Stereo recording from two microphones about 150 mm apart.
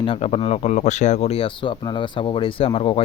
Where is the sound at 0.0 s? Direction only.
40° left (ahead or behind).